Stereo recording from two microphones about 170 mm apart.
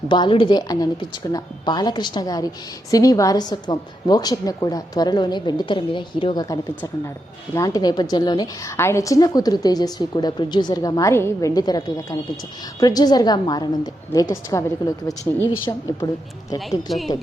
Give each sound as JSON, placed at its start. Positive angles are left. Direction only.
{"t": 0.1, "sound": "a woman's voice", "side_deg": 30}
{"t": 15.2, "sound": "speech", "side_deg": -15}
{"t": 16.6, "sound": "a woman's voice", "side_deg": 0}